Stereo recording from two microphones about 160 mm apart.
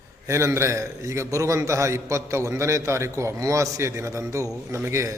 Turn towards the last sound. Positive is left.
turn(degrees=-15)  # may be behind; listen again after turning